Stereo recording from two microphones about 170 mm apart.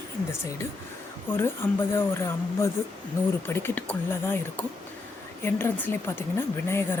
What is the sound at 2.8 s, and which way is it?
Speech, 15° left (ahead or behind).